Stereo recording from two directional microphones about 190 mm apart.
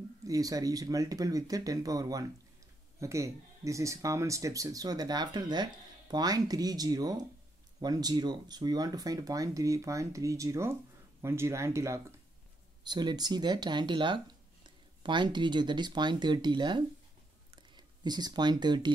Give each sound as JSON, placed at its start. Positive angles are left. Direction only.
{"t": 0.2, "sound": "speech", "side_deg": -20}